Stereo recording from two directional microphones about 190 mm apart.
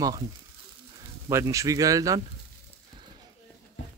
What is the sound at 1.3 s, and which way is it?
Speech, 15° right (ahead or behind).